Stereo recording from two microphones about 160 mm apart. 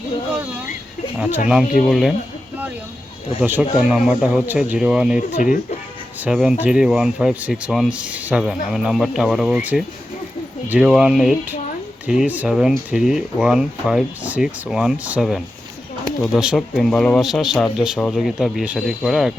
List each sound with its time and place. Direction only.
1.9 s speech: centre (ahead or behind)
3.4 s speech: 10° right (ahead or behind)
5.3 s speech: 55° left (ahead or behind)
6.2 s speech: 5° right (ahead or behind)